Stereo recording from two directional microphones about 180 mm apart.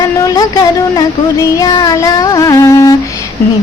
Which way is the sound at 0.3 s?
20° left (ahead or behind).